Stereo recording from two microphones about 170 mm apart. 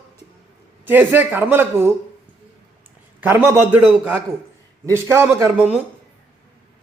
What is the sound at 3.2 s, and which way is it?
Speech, 10° right (ahead or behind).